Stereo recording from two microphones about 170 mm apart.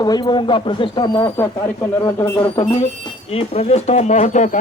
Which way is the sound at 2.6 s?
40° left (ahead or behind).